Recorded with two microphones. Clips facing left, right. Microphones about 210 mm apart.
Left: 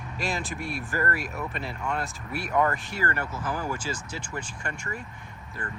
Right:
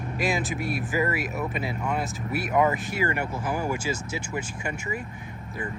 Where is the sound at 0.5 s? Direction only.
5° right (ahead or behind).